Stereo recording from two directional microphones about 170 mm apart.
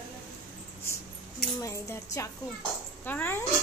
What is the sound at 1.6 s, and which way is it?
A woman's voice, 20° left (ahead or behind).